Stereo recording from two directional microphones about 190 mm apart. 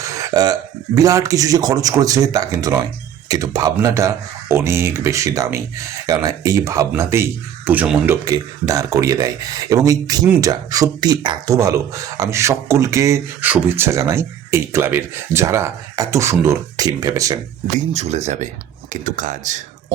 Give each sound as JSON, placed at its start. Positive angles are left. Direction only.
{"t": 0.0, "sound": "a sound", "side_deg": -20}
{"t": 0.9, "sound": "speech", "side_deg": -20}
{"t": 17.9, "sound": "speech", "side_deg": -35}